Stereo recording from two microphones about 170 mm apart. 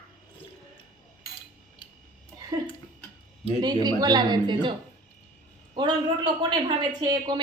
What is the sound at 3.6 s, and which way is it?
A woman's voice, 25° right (ahead or behind).